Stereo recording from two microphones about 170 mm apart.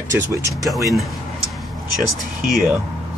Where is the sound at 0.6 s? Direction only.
Centre (ahead or behind).